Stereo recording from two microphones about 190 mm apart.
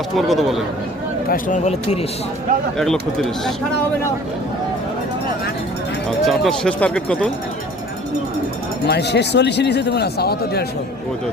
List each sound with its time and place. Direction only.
0.2 s speech: centre (ahead or behind)
1.3 s speech: 40° left (ahead or behind)
2.7 s speech: centre (ahead or behind)
6.1 s speech: centre (ahead or behind)
8.9 s speech: 60° left (ahead or behind)